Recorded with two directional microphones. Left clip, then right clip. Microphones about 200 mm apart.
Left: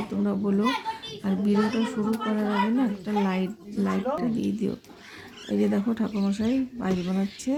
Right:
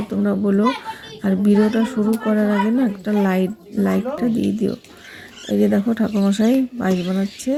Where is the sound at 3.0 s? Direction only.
15° right (ahead or behind).